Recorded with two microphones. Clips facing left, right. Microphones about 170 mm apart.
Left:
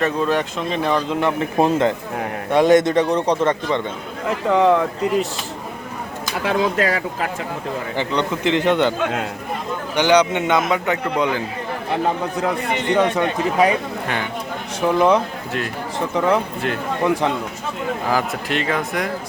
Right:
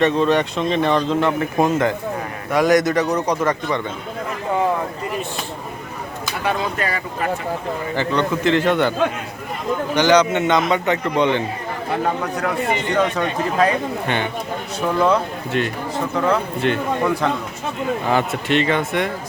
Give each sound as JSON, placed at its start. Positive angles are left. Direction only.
{"t": 0.0, "sound": "speech", "side_deg": 5}
{"t": 1.2, "sound": "a man's voice", "side_deg": 25}
{"t": 4.3, "sound": "speech", "side_deg": 85}
{"t": 6.4, "sound": "speech", "side_deg": 90}
{"t": 7.9, "sound": "a man's voice", "side_deg": 15}
{"t": 9.9, "sound": "a man's voice", "side_deg": 10}
{"t": 12.9, "sound": "a man's voice", "side_deg": 15}
{"t": 14.9, "sound": "a man's voice", "side_deg": 15}
{"t": 15.5, "sound": "speech", "side_deg": 0}
{"t": 16.1, "sound": "a man's voice", "side_deg": 15}
{"t": 16.6, "sound": "speech", "side_deg": 0}
{"t": 18.1, "sound": "speech", "side_deg": 0}